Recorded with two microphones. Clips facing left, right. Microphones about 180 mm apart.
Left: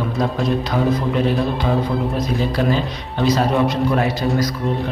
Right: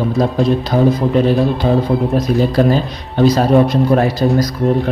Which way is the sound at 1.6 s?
45° right (ahead or behind).